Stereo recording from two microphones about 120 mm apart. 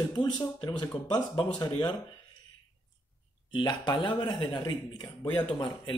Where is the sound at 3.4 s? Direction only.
40° left (ahead or behind).